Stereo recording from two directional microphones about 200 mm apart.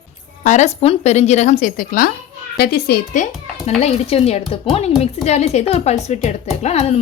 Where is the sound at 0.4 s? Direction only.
35° left (ahead or behind).